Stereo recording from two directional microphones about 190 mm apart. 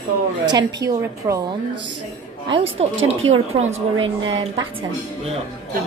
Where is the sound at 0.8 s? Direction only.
15° right (ahead or behind).